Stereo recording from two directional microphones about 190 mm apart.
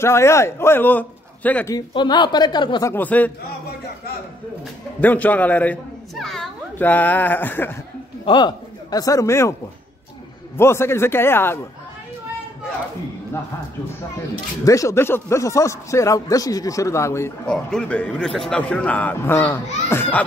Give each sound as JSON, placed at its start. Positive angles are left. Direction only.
{"t": 0.0, "sound": "a man's voice", "side_deg": 15}
{"t": 2.0, "sound": "a woman's voice", "side_deg": 25}
{"t": 2.9, "sound": "a man's voice", "side_deg": 10}
{"t": 5.0, "sound": "a man's voice", "side_deg": 10}
{"t": 8.3, "sound": "a man's voice", "side_deg": 25}
{"t": 10.6, "sound": "a man's voice", "side_deg": 15}
{"t": 14.6, "sound": "a man's voice", "side_deg": 15}